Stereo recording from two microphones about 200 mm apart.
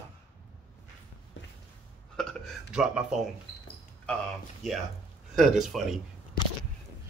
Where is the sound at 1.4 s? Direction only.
65° left (ahead or behind).